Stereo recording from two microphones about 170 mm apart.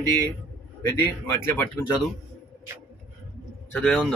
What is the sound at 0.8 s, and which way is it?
Speech, 15° left (ahead or behind).